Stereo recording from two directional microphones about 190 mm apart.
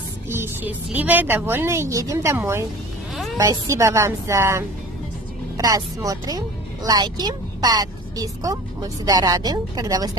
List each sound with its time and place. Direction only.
0.3 s a woman's voice: 10° right (ahead or behind)